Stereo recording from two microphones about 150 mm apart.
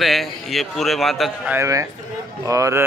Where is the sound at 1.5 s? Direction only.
20° right (ahead or behind).